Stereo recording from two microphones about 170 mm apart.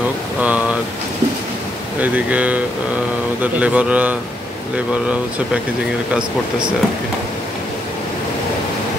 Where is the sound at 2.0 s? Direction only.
10° right (ahead or behind).